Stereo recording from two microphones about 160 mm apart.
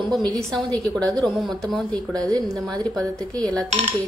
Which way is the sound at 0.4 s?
5° left (ahead or behind).